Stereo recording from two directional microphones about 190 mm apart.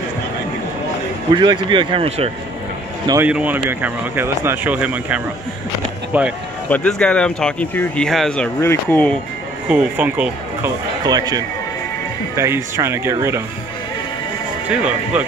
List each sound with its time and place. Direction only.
1.3 s speech: 25° right (ahead or behind)
3.1 s speech: 10° right (ahead or behind)
6.7 s speech: 5° left (ahead or behind)
9.7 s speech: 5° right (ahead or behind)
11.1 s speech: 20° right (ahead or behind)
14.7 s speech: 5° right (ahead or behind)